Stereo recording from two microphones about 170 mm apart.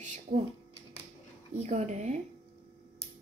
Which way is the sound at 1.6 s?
40° right (ahead or behind).